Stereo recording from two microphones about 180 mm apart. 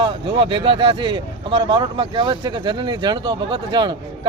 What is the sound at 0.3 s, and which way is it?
Speech, 30° right (ahead or behind).